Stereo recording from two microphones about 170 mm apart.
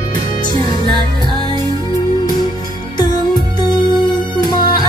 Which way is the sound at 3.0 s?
25° left (ahead or behind).